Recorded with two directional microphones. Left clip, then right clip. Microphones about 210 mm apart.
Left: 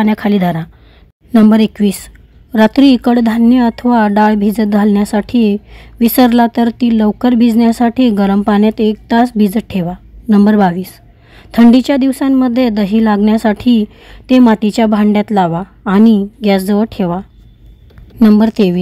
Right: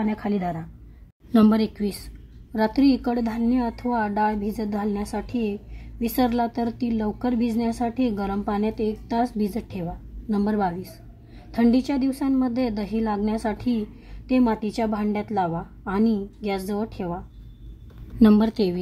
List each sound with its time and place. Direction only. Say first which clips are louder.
0.0 s a woman's voice: left 13 dB; 30° left (ahead or behind)
18.2 s speech: left 9 dB; 25° left (ahead or behind)